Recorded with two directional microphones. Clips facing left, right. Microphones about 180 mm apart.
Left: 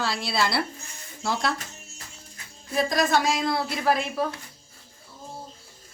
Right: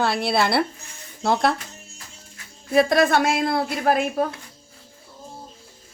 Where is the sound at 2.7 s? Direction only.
65° right (ahead or behind).